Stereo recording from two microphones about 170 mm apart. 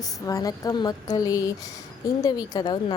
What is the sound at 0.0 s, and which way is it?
A woman's voice, 20° left (ahead or behind).